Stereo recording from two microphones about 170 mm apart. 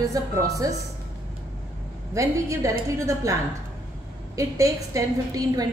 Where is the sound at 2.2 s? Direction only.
20° right (ahead or behind).